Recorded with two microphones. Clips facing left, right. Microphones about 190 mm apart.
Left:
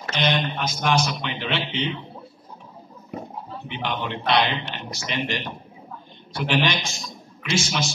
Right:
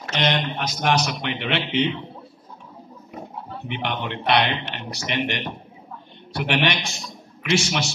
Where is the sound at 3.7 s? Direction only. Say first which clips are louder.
Right 1 dB; 65° right (ahead or behind).